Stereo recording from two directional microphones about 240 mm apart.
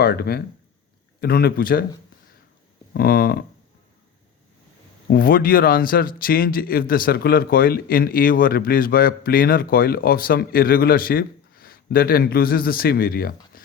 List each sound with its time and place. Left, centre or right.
0.0 s speech: left
2.9 s speech: left
5.1 s speech: left